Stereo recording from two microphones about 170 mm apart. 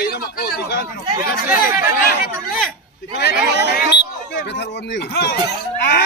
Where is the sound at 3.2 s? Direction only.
75° left (ahead or behind).